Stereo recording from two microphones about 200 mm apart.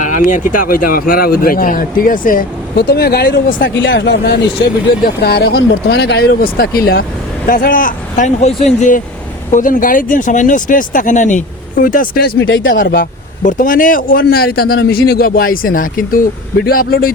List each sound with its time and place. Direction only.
0.0 s a man's voice: 40° left (ahead or behind)
12.4 s speech: 75° left (ahead or behind)
12.7 s a man's voice: 45° left (ahead or behind)